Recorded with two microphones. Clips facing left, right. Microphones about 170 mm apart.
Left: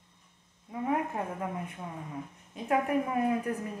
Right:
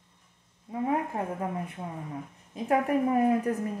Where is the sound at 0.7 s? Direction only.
20° right (ahead or behind).